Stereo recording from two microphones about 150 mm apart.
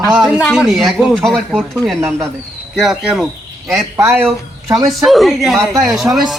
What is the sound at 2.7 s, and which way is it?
Speech, 5° right (ahead or behind).